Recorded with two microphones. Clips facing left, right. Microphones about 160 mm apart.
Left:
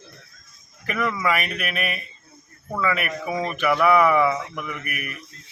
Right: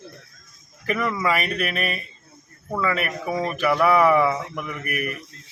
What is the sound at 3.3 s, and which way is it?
Speech, 5° right (ahead or behind).